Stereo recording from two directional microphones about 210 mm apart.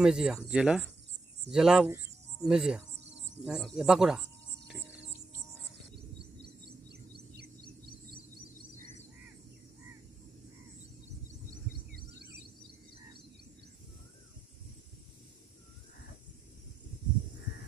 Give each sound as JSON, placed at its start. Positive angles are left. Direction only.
{"t": 0.0, "sound": "speech", "side_deg": -5}
{"t": 6.4, "sound": "music", "side_deg": -50}
{"t": 11.5, "sound": "a sound", "side_deg": -45}